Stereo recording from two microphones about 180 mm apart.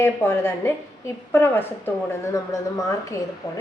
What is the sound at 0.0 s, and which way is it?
A woman's voice, 15° left (ahead or behind).